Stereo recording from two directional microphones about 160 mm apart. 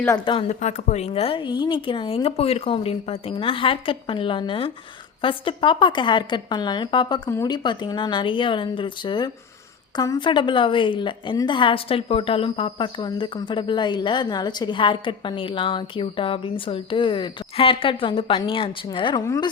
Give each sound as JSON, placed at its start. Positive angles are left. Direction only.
{"t": 0.3, "sound": "a woman's voice", "side_deg": 35}
{"t": 0.6, "sound": "a woman's voice", "side_deg": 45}